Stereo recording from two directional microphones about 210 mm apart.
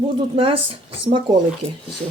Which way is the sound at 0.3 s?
25° right (ahead or behind).